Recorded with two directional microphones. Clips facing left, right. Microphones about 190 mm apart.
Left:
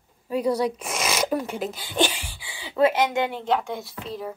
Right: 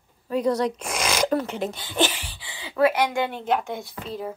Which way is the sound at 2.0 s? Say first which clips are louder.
Even; 10° left (ahead or behind).